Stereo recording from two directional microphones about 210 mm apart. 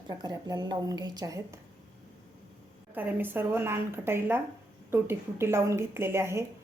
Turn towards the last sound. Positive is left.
turn(degrees=-10)  # may be behind; listen again after turning